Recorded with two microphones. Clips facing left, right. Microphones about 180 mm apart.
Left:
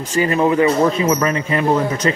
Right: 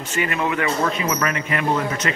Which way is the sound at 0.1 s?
35° left (ahead or behind).